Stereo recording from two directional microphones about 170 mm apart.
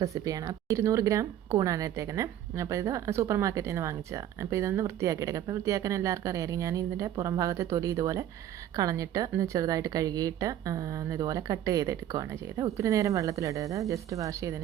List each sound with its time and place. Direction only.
0.0 s speech: 20° right (ahead or behind)